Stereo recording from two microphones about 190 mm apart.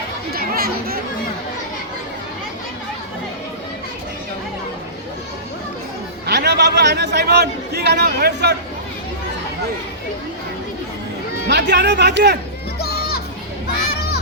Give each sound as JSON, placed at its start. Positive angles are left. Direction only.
{"t": 0.3, "sound": "chatter", "side_deg": -50}
{"t": 6.2, "sound": "speech", "side_deg": -60}
{"t": 11.4, "sound": "speech", "side_deg": -60}